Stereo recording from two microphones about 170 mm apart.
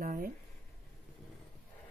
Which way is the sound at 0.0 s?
60° right (ahead or behind).